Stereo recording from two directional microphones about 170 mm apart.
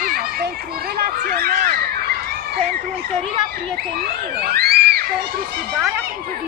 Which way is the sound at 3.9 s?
70° right (ahead or behind).